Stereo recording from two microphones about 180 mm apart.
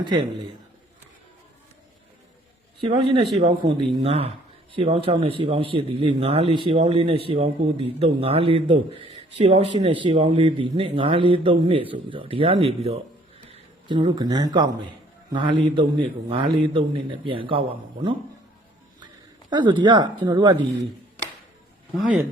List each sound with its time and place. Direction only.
0.0 s a man's voice: 25° right (ahead or behind)
3.3 s a man's voice: 30° right (ahead or behind)
18.9 s a sound: 25° right (ahead or behind)
19.8 s a man's voice: 25° right (ahead or behind)